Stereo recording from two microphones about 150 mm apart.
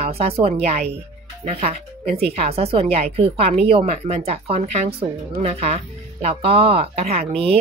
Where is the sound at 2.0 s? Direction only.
45° right (ahead or behind).